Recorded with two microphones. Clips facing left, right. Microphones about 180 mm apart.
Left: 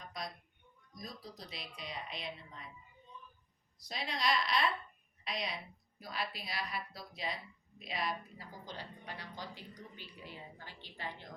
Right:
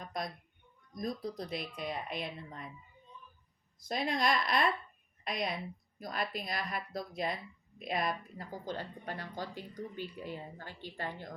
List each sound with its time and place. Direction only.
0.0 s a sound: 50° right (ahead or behind)
0.9 s speech: 55° right (ahead or behind)
3.8 s a woman's voice: 50° right (ahead or behind)